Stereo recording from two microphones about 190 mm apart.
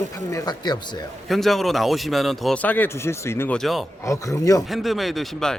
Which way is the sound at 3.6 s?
Centre (ahead or behind).